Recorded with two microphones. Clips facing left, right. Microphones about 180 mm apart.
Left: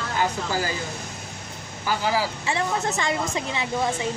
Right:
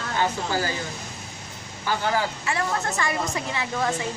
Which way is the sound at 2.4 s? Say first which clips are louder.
Left 1 dB; 20° left (ahead or behind).